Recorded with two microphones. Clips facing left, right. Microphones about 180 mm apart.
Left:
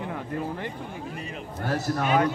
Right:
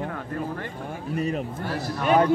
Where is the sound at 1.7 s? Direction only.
45° left (ahead or behind).